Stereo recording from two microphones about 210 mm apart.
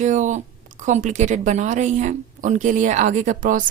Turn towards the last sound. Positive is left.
turn(degrees=-40)  # may be behind; listen again after turning